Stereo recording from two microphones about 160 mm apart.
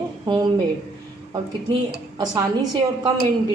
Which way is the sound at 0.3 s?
30° right (ahead or behind).